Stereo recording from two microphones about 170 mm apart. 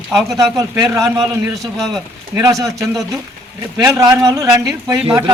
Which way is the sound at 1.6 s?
Centre (ahead or behind).